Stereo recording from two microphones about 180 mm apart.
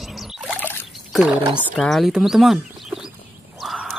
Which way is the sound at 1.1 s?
5° right (ahead or behind).